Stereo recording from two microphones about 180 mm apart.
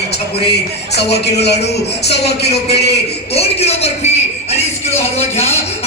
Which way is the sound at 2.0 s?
65° left (ahead or behind).